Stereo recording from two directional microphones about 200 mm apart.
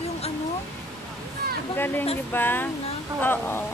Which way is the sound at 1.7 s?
10° left (ahead or behind).